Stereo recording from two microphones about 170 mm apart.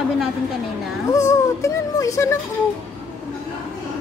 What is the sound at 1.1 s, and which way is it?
Music, 20° left (ahead or behind).